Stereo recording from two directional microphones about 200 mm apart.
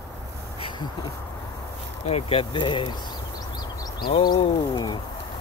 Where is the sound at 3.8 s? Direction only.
20° left (ahead or behind).